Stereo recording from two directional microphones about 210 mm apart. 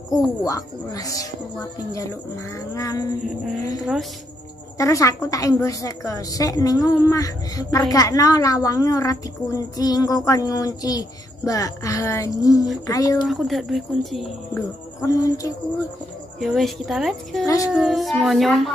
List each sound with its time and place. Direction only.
0.1 s a woman's voice: 15° left (ahead or behind)
2.5 s a woman's voice: 15° left (ahead or behind)
4.7 s a woman's voice: 15° left (ahead or behind)
13.3 s speech: centre (ahead or behind)
14.5 s a woman's voice: 15° left (ahead or behind)
16.3 s speech: centre (ahead or behind)